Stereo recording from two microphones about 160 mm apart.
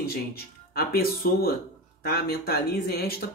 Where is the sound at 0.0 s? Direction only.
75° left (ahead or behind).